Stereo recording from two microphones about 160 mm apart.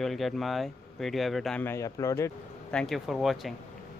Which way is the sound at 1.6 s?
15° left (ahead or behind).